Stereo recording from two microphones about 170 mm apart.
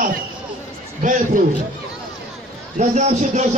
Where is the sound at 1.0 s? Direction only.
50° right (ahead or behind).